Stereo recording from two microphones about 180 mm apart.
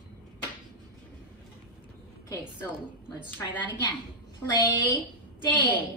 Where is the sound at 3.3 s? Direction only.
10° left (ahead or behind).